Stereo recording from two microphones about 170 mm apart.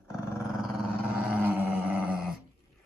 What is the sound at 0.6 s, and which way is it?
Dog, centre (ahead or behind).